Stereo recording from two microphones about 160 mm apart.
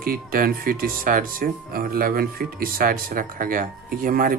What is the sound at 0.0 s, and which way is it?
Speech, 65° right (ahead or behind).